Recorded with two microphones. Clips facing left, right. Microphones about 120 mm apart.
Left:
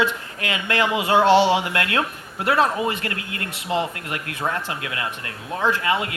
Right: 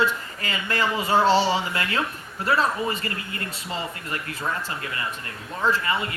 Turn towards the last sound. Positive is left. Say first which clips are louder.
# left 2 dB
turn(degrees=85)